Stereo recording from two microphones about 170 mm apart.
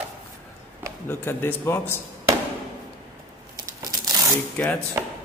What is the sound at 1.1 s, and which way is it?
Speech, 15° left (ahead or behind).